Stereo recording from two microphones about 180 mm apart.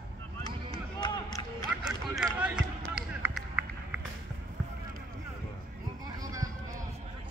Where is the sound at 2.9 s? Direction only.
5° right (ahead or behind).